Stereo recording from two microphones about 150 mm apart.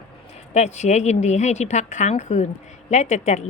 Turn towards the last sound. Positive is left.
turn(degrees=50)  # may be behind; listen again after turning